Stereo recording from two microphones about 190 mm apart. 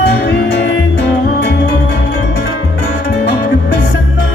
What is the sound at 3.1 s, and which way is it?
Music, 65° left (ahead or behind).